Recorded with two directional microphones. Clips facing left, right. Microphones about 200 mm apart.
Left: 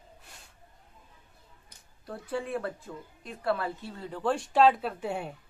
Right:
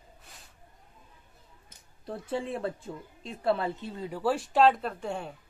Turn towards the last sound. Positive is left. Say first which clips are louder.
# left 1 dB
turn(degrees=10)  # may be behind; listen again after turning